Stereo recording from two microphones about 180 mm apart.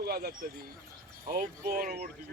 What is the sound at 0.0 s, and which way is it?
Speech, 60° right (ahead or behind).